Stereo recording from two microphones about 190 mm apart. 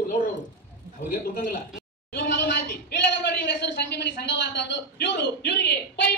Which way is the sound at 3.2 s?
65° left (ahead or behind).